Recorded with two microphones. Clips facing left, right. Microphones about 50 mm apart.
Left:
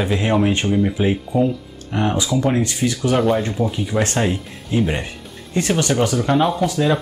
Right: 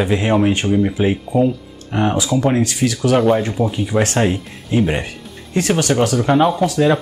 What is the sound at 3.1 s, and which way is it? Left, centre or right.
Speech, centre.